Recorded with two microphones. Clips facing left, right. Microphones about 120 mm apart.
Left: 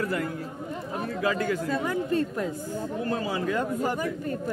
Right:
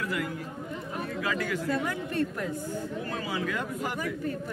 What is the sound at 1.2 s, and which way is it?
Speech, 35° left (ahead or behind).